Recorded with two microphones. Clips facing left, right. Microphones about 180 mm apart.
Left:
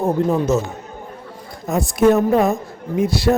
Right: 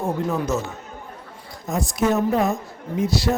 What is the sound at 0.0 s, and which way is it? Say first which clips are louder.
Speech: left 6 dB; 30° left (ahead or behind).